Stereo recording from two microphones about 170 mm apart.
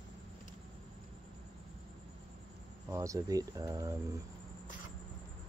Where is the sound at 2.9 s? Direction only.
20° right (ahead or behind).